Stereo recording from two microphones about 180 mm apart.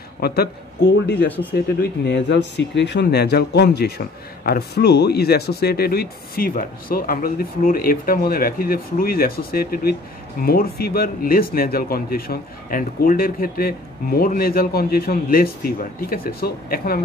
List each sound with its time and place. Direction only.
0.2 s speech: 65° left (ahead or behind)